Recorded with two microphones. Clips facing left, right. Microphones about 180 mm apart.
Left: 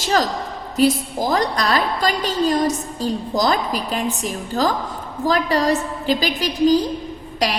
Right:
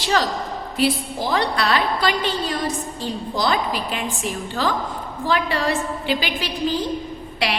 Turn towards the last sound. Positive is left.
turn(degrees=40)  # may be behind; listen again after turning